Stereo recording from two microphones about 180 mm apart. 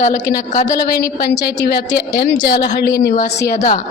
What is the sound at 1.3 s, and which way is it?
Speech, 70° left (ahead or behind).